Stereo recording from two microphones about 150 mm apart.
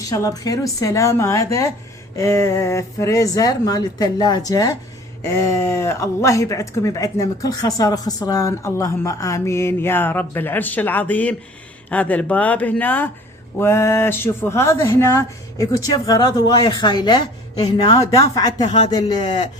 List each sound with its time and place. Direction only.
0.0 s speech: 25° left (ahead or behind)